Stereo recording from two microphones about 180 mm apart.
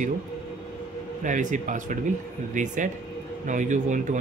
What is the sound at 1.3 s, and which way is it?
Speech, 45° right (ahead or behind).